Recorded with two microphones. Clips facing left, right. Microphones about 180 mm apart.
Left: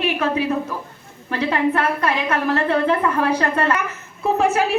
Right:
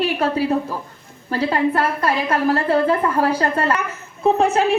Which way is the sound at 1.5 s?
35° right (ahead or behind).